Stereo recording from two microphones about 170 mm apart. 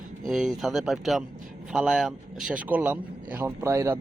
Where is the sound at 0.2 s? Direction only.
Centre (ahead or behind).